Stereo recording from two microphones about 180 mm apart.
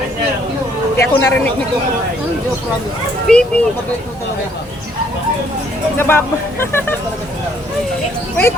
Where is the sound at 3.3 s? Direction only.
5° left (ahead or behind).